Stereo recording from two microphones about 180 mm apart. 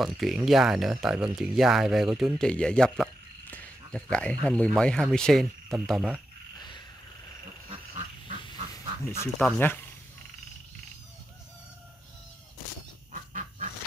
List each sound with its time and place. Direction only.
0.0 s speech: centre (ahead or behind)
9.2 s speech: 10° left (ahead or behind)
13.1 s bird: 45° right (ahead or behind)